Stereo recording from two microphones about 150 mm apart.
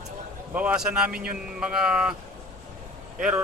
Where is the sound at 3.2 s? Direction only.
5° right (ahead or behind).